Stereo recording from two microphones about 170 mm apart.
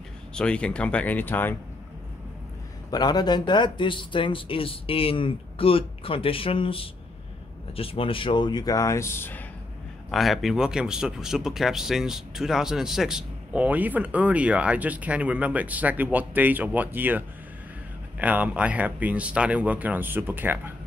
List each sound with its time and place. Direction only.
0.3 s speech: 5° left (ahead or behind)
2.9 s speech: 25° left (ahead or behind)
10.1 s speech: centre (ahead or behind)
18.2 s speech: 10° right (ahead or behind)